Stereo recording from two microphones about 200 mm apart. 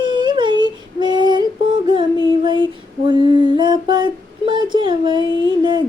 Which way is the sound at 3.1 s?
25° right (ahead or behind).